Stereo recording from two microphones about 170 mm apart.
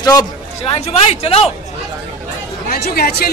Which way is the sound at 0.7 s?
35° left (ahead or behind).